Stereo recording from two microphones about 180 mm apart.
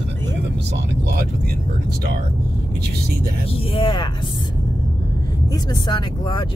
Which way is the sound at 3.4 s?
30° left (ahead or behind).